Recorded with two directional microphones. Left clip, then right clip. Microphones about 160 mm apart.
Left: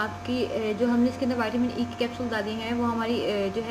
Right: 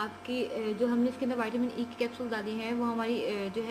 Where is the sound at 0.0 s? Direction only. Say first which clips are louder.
Left 5 dB; 30° right (ahead or behind).